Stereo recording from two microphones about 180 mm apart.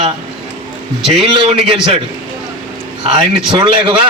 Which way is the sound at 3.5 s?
25° right (ahead or behind).